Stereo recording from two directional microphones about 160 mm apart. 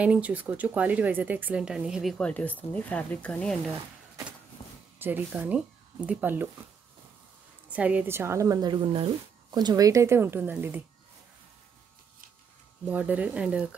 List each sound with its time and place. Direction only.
0.0 s speech: 10° right (ahead or behind)
4.9 s speech: 10° right (ahead or behind)
7.7 s a woman's voice: 10° right (ahead or behind)
12.8 s a woman's voice: 10° right (ahead or behind)